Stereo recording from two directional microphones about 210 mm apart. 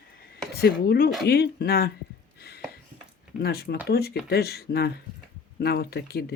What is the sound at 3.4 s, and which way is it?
Speech, 50° left (ahead or behind).